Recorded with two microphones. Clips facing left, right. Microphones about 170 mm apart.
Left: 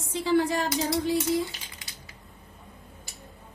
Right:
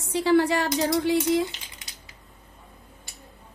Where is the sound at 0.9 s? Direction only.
85° right.